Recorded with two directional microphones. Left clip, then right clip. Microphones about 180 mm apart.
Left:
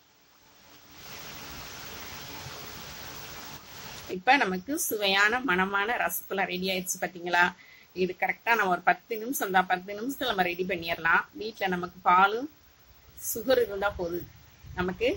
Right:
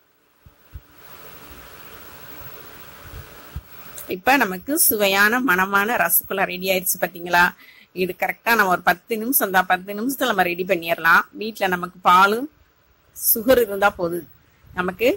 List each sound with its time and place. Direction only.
4.1 s speech: 45° right (ahead or behind)
13.5 s speech: 45° right (ahead or behind)